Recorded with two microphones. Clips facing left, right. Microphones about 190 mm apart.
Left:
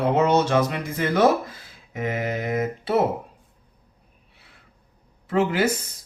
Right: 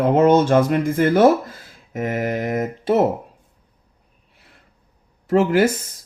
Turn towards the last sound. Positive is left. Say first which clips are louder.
# right 6 dB
turn(degrees=-45)  # may be behind; listen again after turning